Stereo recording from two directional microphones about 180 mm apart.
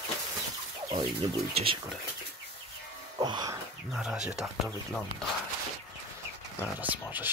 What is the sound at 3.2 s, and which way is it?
Speech, 20° right (ahead or behind).